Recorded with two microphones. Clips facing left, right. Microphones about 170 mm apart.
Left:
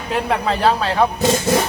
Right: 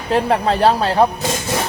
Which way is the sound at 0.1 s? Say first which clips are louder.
Right 4 dB; 35° right (ahead or behind).